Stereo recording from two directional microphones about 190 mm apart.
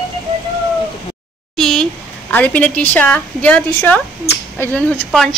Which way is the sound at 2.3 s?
10° left (ahead or behind).